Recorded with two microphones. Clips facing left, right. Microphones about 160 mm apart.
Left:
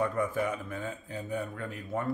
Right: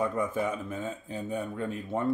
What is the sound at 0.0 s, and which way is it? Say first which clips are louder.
Speech: right 1 dB; 20° right (ahead or behind).